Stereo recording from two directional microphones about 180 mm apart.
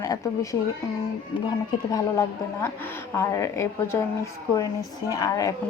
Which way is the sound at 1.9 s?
20° left (ahead or behind).